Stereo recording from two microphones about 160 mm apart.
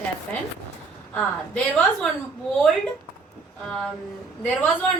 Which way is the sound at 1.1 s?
5° left (ahead or behind).